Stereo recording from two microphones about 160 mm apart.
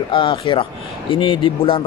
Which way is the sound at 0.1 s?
30° left (ahead or behind).